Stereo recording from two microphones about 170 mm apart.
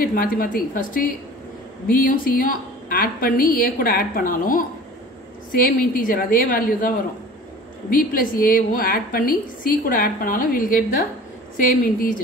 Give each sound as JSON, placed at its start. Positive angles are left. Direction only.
{"t": 0.0, "sound": "a woman's voice", "side_deg": 55}